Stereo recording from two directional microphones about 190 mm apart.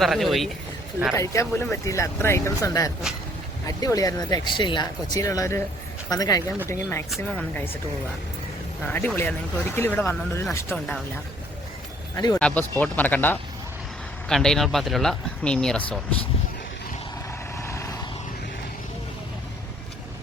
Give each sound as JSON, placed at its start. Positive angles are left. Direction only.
{"t": 0.0, "sound": "speech", "side_deg": 0}
{"t": 1.1, "sound": "speech", "side_deg": 15}
{"t": 8.8, "sound": "speech", "side_deg": 10}
{"t": 12.1, "sound": "speech", "side_deg": 20}
{"t": 12.4, "sound": "speech", "side_deg": 5}
{"t": 17.6, "sound": "vehicle", "side_deg": 15}